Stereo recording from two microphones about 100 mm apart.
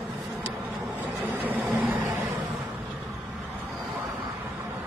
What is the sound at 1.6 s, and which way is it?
Vehicle, centre (ahead or behind).